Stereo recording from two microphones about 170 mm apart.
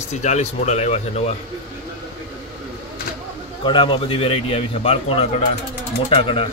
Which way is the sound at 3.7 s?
30° left (ahead or behind).